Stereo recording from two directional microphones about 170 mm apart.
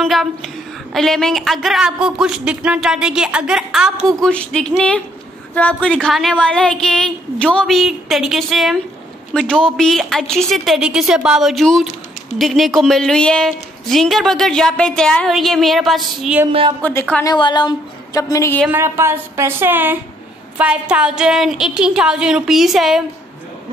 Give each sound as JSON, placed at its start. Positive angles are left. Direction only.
{"t": 0.0, "sound": "a woman's voice", "side_deg": 0}
{"t": 17.3, "sound": "a woman's voice", "side_deg": 25}
{"t": 18.7, "sound": "a woman's voice", "side_deg": -15}